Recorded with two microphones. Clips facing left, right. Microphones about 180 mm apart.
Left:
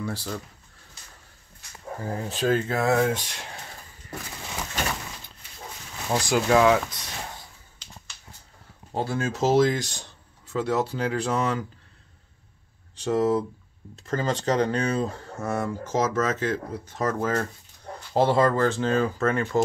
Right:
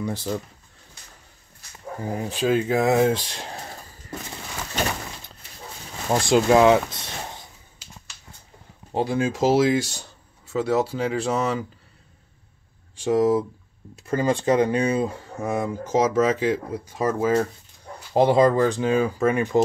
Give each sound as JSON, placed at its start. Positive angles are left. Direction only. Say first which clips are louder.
{"t": 0.0, "sound": "speech", "louder": "right 4 dB", "side_deg": -20}
{"t": 2.0, "sound": "speech", "louder": "right 2 dB", "side_deg": -15}
{"t": 6.2, "sound": "speech", "louder": "right 4 dB", "side_deg": -25}
{"t": 8.9, "sound": "speech", "louder": "right 4 dB", "side_deg": -15}
{"t": 12.9, "sound": "speech", "louder": "right 3 dB", "side_deg": -10}